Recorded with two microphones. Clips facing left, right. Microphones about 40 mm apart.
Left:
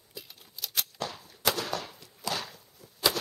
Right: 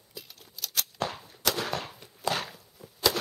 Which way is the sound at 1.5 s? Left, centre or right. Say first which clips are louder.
Right 1 dB; centre.